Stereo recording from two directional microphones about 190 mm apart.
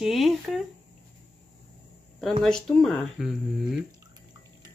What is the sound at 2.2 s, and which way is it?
Speech, 5° left (ahead or behind).